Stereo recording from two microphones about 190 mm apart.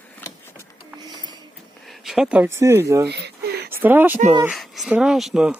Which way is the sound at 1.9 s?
Centre (ahead or behind).